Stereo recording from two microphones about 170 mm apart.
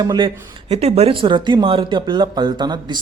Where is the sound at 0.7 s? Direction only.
35° right (ahead or behind).